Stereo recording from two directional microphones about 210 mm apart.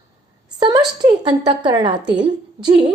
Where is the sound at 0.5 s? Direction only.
20° right (ahead or behind).